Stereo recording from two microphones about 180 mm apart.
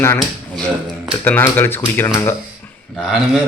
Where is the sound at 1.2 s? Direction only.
10° left (ahead or behind).